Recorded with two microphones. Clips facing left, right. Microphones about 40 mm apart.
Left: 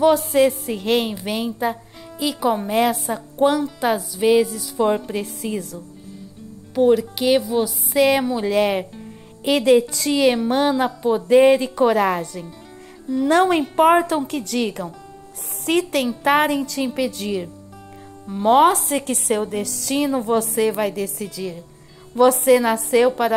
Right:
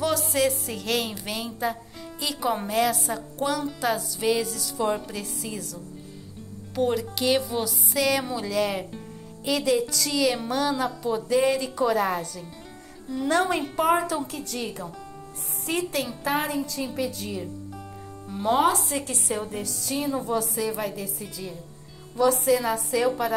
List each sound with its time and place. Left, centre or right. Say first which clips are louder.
0.3 s a woman's voice: left 7 dB; left; by 2.7 s centre
2.7 s a woman's voice: left 5 dB; left
4.8 s a woman's voice: left 7 dB; left
6.7 s speech: left 9 dB; centre
7.9 s speech: left 8 dB; left
8.4 s a woman's voice: left 7 dB; left
18.5 s a woman's voice: left 7 dB; left
22.1 s a woman's voice: left 7 dB; left